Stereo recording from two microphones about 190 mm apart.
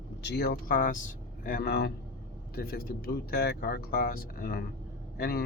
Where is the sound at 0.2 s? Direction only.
60° left (ahead or behind).